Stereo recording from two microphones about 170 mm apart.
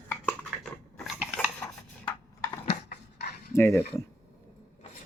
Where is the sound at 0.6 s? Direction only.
5° right (ahead or behind).